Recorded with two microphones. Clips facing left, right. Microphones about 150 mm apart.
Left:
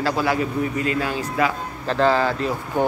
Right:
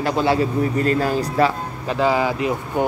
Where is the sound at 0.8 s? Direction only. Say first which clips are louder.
Right 4 dB; 40° right (ahead or behind).